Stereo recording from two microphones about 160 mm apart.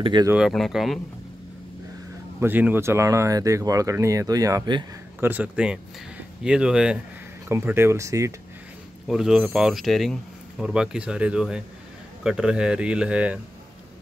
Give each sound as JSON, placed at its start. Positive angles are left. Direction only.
{"t": 0.0, "sound": "speech", "side_deg": -30}
{"t": 0.5, "sound": "a man's voice", "side_deg": 0}
{"t": 2.4, "sound": "speech", "side_deg": -10}
{"t": 5.2, "sound": "a man's voice", "side_deg": -10}
{"t": 9.0, "sound": "a man's voice", "side_deg": -5}